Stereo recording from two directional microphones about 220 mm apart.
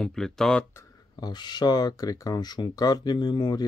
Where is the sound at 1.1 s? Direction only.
20° left (ahead or behind).